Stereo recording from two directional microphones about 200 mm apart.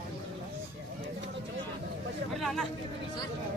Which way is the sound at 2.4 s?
Centre (ahead or behind).